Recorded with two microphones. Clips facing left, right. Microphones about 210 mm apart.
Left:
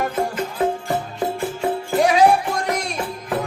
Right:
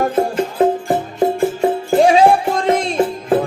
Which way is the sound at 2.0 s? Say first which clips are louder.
Right 4 dB; 30° right (ahead or behind).